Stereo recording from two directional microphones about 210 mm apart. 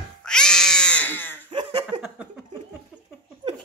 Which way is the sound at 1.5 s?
25° right (ahead or behind).